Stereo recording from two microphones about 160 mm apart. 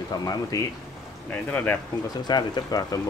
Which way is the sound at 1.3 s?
10° left (ahead or behind).